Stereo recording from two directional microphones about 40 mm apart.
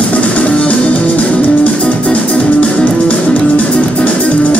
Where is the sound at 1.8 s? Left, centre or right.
Left.